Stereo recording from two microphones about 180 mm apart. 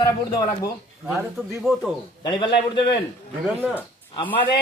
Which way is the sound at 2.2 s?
25° left (ahead or behind).